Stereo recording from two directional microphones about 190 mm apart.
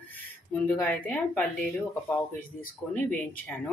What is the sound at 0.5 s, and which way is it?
Speech, 10° left (ahead or behind).